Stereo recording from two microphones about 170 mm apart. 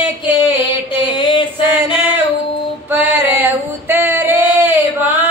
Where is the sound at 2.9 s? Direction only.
10° right (ahead or behind).